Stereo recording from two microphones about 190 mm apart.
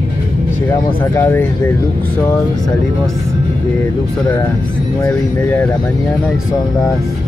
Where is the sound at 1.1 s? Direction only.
10° left (ahead or behind).